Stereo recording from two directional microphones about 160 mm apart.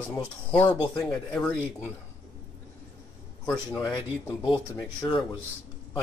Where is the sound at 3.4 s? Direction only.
5° left (ahead or behind).